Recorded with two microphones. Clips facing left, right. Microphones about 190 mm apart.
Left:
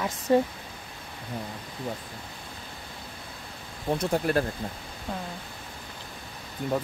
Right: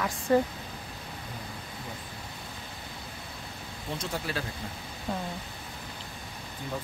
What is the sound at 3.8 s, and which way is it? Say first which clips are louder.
Speech: left 9 dB; 55° left (ahead or behind).